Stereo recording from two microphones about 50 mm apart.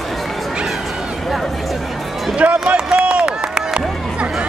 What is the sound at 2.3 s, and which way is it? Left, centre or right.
Run, right.